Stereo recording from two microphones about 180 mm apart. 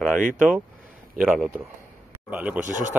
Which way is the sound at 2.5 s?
45° right (ahead or behind).